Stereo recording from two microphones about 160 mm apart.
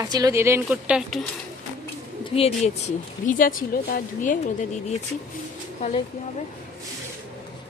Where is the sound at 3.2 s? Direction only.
60° left (ahead or behind).